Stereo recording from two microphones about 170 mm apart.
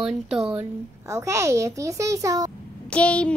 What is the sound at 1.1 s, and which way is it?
A child's voice, 15° right (ahead or behind).